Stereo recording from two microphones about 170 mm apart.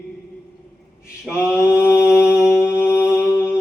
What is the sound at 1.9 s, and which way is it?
Mantra, 5° right (ahead or behind).